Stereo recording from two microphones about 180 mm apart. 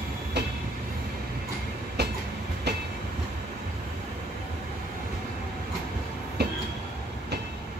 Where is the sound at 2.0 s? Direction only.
65° right (ahead or behind).